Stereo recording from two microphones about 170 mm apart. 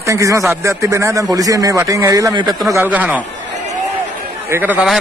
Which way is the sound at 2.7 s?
10° right (ahead or behind).